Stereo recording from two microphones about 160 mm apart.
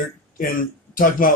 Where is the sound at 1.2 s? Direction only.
60° left (ahead or behind).